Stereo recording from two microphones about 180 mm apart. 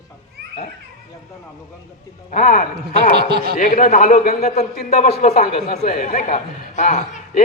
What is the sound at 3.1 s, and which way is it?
Speech, 65° right (ahead or behind).